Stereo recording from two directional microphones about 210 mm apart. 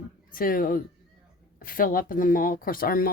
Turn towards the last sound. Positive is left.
turn(degrees=45)  # may be behind; listen again after turning